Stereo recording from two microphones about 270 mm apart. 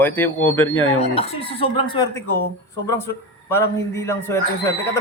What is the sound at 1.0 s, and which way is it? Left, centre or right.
Speech, left.